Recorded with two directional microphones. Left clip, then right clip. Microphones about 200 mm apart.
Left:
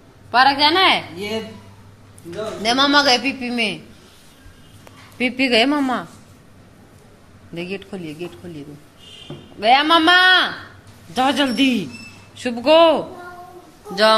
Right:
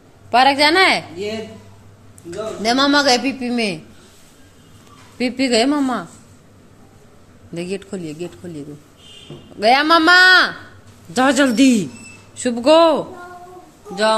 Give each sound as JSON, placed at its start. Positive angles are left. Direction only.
{"t": 0.3, "sound": "speech", "side_deg": -50}
{"t": 2.6, "sound": "a man's voice", "side_deg": -30}
{"t": 5.1, "sound": "a woman's voice", "side_deg": -15}
{"t": 7.5, "sound": "a man's voice", "side_deg": -30}
{"t": 12.4, "sound": "a man's voice", "side_deg": -30}